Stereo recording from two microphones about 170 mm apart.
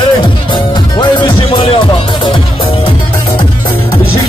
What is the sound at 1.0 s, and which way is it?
Music, 30° left (ahead or behind).